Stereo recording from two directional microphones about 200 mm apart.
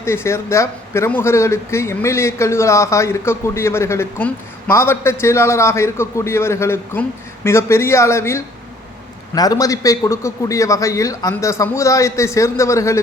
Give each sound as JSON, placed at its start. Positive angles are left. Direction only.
{"t": 0.0, "sound": "speech", "side_deg": 15}